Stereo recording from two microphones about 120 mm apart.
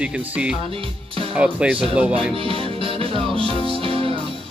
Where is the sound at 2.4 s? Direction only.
50° right (ahead or behind).